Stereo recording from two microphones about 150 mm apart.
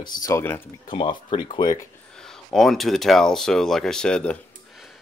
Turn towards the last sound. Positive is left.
turn(degrees=0)  # may be behind; listen again after turning